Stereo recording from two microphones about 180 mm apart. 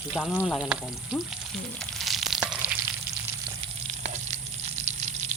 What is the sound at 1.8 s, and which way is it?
Frying, centre (ahead or behind).